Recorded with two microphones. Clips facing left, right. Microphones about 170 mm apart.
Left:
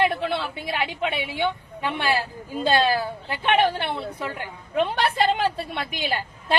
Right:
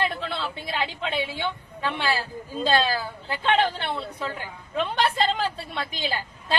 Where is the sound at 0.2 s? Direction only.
60° left (ahead or behind).